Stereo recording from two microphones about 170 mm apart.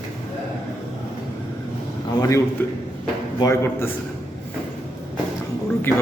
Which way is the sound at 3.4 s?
15° left (ahead or behind).